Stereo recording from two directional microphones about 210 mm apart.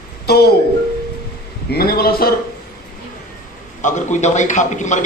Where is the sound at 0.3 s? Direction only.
50° left (ahead or behind).